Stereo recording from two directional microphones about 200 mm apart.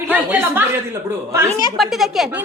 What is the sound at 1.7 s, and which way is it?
Speech, centre (ahead or behind).